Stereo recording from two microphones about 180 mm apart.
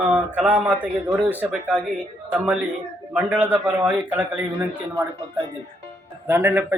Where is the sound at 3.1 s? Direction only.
10° right (ahead or behind).